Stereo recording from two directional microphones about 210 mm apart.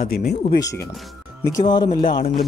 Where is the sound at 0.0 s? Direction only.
45° left (ahead or behind).